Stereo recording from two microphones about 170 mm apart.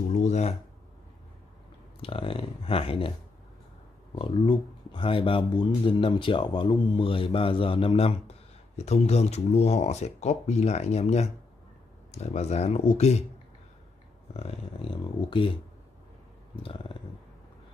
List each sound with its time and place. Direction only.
0.1 s a sound: 45° left (ahead or behind)
2.0 s speech: 35° left (ahead or behind)
4.1 s speech: 30° left (ahead or behind)
14.3 s speech: 35° left (ahead or behind)